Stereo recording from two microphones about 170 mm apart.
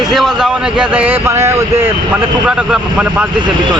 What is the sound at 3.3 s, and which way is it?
Speech, 25° right (ahead or behind).